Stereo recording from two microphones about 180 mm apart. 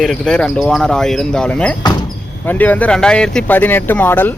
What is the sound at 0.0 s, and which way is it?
Speech, centre (ahead or behind).